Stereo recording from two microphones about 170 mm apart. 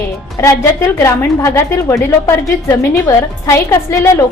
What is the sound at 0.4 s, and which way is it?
A woman's voice, 15° left (ahead or behind).